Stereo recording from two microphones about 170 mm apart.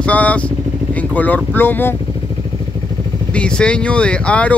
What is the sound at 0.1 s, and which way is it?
Speech, 10° left (ahead or behind).